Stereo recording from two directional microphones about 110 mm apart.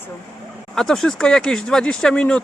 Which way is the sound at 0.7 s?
5° left (ahead or behind).